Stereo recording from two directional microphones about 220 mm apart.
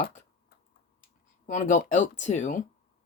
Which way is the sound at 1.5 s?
35° left (ahead or behind).